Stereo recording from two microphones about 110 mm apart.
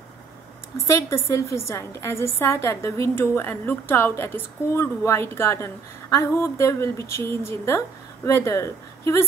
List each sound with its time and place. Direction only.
0.8 s a woman's voice: 25° left (ahead or behind)